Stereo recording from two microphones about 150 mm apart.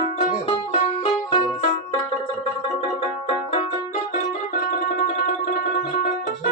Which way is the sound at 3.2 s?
45° left (ahead or behind).